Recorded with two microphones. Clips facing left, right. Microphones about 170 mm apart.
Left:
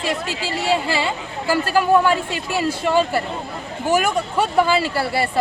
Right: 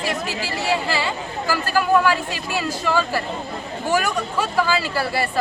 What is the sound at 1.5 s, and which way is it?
A man's voice, 25° left (ahead or behind).